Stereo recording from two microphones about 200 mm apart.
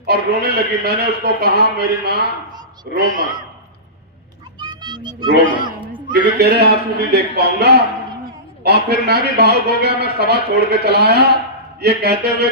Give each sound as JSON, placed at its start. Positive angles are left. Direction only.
{"t": 0.0, "sound": "a man's voice", "side_deg": -55}
{"t": 4.6, "sound": "music", "side_deg": -20}
{"t": 5.5, "sound": "a sound", "side_deg": -25}
{"t": 6.1, "sound": "a man's voice", "side_deg": -55}